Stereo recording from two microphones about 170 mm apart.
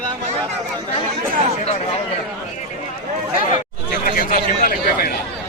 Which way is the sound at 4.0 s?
55° left (ahead or behind).